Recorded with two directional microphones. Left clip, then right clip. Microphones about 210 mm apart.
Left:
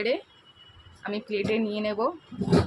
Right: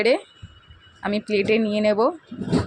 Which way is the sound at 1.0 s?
30° right (ahead or behind).